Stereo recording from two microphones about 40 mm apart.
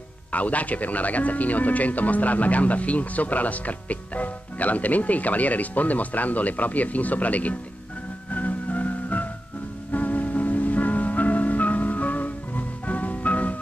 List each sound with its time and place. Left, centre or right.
0.3 s speech: left
8.3 s music: left